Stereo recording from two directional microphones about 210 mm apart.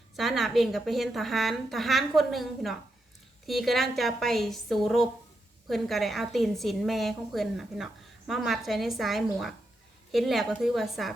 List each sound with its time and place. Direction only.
0.2 s a woman's voice: centre (ahead or behind)